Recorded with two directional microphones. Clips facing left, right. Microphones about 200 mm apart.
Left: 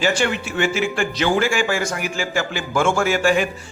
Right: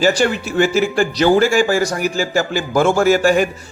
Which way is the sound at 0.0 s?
40° right (ahead or behind).